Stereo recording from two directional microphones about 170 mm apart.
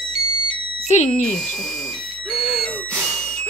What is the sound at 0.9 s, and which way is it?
Speech, 40° left (ahead or behind).